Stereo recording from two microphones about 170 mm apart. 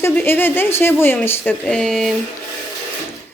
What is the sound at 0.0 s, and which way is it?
Speech, 15° left (ahead or behind).